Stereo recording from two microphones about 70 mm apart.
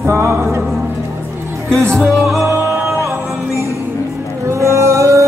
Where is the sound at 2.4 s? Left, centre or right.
Right.